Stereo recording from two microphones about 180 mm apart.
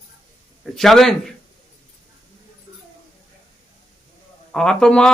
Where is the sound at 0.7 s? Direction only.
Centre (ahead or behind).